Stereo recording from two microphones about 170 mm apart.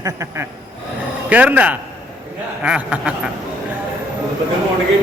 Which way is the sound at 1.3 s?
10° right (ahead or behind).